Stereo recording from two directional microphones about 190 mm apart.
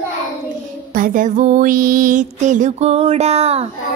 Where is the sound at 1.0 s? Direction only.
40° right (ahead or behind).